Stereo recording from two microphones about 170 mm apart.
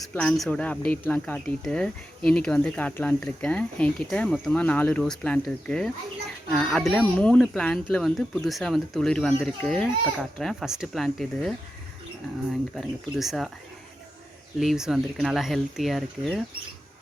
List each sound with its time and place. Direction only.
0.1 s speech: 5° left (ahead or behind)
12.7 s speech: centre (ahead or behind)
14.6 s speech: centre (ahead or behind)